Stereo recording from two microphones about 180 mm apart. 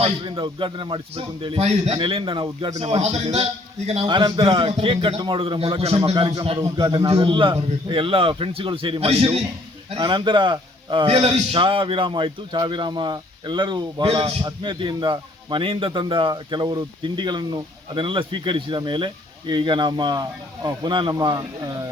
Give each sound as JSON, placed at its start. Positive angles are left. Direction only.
{"t": 0.0, "sound": "a man's voice", "side_deg": -30}
{"t": 4.0, "sound": "a man's voice", "side_deg": -25}